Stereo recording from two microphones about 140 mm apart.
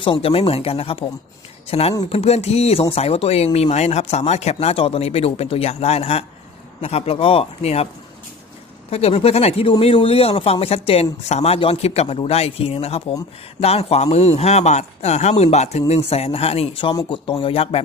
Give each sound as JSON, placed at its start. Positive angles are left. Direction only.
{"t": 0.0, "sound": "speech", "side_deg": 40}
{"t": 8.9, "sound": "speech", "side_deg": 45}
{"t": 16.9, "sound": "speech", "side_deg": 30}